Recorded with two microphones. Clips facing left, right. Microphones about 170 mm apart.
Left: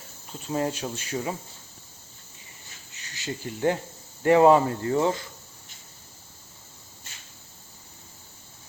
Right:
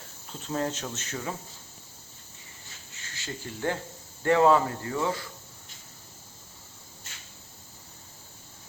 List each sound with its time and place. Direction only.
0.4 s speech: 10° left (ahead or behind)
2.9 s speech: 15° left (ahead or behind)